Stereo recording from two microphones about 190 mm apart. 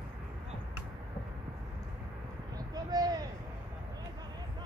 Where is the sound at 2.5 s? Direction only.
20° right (ahead or behind).